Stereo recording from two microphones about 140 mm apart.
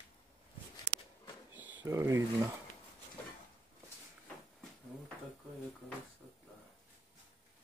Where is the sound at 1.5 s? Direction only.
15° right (ahead or behind).